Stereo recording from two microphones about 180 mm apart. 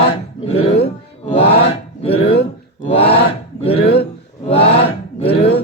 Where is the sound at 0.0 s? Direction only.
35° left (ahead or behind).